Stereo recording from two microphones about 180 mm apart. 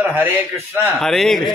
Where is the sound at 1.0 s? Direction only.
Centre (ahead or behind).